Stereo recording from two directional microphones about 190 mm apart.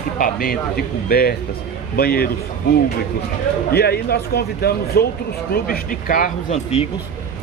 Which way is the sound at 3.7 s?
55° left (ahead or behind).